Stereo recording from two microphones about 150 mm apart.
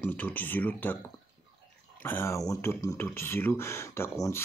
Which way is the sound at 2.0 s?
15° left (ahead or behind).